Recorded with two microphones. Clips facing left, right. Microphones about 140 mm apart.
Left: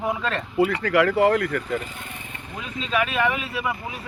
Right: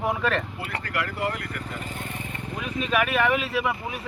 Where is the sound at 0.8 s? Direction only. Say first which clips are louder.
Left 9 dB; 90° left.